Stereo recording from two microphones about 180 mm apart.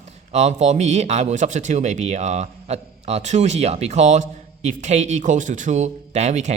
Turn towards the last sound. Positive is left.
turn(degrees=-40)  # may be behind; listen again after turning